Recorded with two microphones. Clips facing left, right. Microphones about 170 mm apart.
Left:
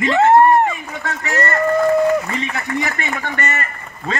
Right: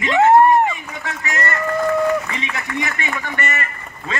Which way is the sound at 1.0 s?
35° left (ahead or behind).